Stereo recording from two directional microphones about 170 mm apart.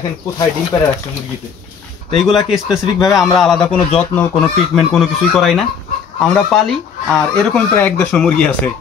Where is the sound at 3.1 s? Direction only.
Centre (ahead or behind).